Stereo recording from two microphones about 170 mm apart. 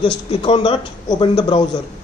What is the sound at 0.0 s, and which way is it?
A man's voice, 30° left (ahead or behind).